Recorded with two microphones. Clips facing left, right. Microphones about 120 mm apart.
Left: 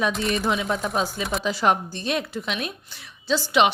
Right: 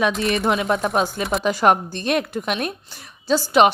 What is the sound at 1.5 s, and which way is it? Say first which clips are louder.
A woman's voice: right 5 dB; 50° right (ahead or behind).